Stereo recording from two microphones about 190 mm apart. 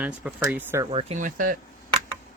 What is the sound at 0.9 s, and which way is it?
Speech, 30° right (ahead or behind).